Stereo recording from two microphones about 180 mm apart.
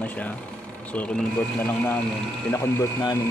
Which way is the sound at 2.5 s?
20° left (ahead or behind).